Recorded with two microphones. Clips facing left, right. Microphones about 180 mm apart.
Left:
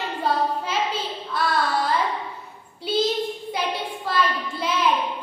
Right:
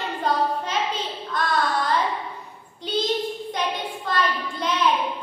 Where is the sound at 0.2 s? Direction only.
5° left (ahead or behind).